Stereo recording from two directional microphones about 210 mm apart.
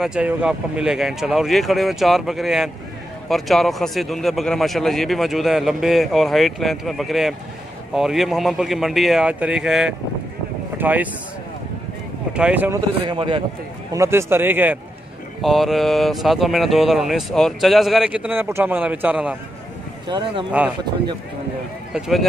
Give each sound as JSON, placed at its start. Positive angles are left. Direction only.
{"t": 0.0, "sound": "speech", "side_deg": -5}
{"t": 12.4, "sound": "a man's voice", "side_deg": -5}
{"t": 13.0, "sound": "a man's voice", "side_deg": -25}
{"t": 13.9, "sound": "a man's voice", "side_deg": -10}
{"t": 20.1, "sound": "a man's voice", "side_deg": -20}
{"t": 21.9, "sound": "speech", "side_deg": -5}